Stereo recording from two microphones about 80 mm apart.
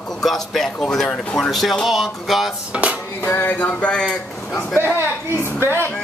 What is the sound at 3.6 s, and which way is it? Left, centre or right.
Speech, centre.